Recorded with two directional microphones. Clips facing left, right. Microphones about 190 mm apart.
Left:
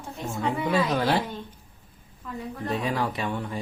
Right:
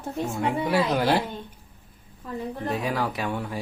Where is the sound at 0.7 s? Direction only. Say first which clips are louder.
Right 1 dB; 10° right (ahead or behind).